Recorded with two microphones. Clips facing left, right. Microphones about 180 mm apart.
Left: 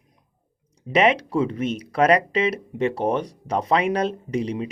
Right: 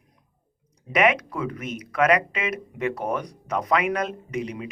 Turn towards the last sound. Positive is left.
turn(degrees=30)  # may be behind; listen again after turning